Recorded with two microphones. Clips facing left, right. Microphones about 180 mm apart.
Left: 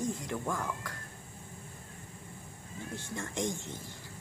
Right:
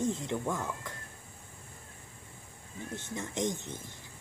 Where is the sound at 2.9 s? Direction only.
20° right (ahead or behind).